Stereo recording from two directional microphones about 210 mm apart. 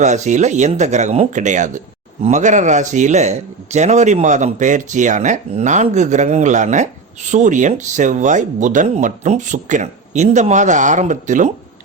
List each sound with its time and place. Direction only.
0.0 s a man's voice: 35° right (ahead or behind)